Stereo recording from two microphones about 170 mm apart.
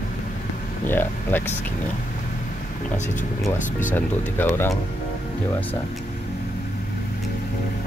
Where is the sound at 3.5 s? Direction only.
50° left (ahead or behind).